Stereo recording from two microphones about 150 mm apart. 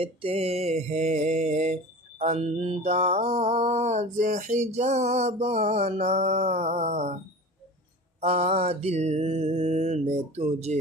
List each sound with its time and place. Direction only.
0.0 s mantra: 40° right (ahead or behind)
8.2 s mantra: 45° right (ahead or behind)